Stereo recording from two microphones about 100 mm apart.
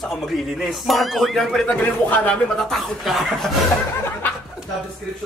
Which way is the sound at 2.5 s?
Centre (ahead or behind).